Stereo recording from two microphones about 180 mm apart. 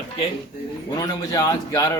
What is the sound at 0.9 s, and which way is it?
Speech, 20° left (ahead or behind).